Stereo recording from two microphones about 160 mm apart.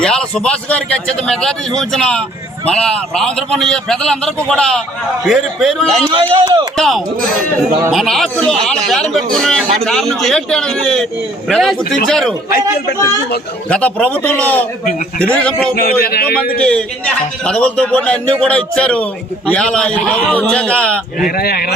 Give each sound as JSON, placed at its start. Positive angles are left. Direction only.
{"t": 0.0, "sound": "a man's voice", "side_deg": 5}
{"t": 6.1, "sound": "a man's voice", "side_deg": -30}
{"t": 6.7, "sound": "a man's voice", "side_deg": 0}
{"t": 13.7, "sound": "a man's voice", "side_deg": 5}
{"t": 15.7, "sound": "a man's voice", "side_deg": 75}
{"t": 16.6, "sound": "a man's voice", "side_deg": 5}
{"t": 21.2, "sound": "a man's voice", "side_deg": 75}